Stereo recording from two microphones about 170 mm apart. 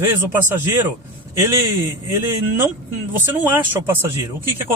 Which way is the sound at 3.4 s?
15° right (ahead or behind).